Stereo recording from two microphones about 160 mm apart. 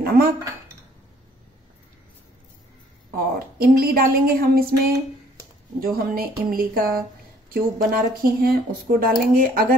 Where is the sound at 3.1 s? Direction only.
70° right (ahead or behind).